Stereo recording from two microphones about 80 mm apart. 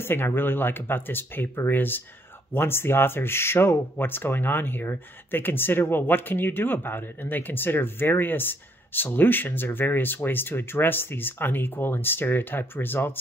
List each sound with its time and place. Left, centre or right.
0.0 s speech: left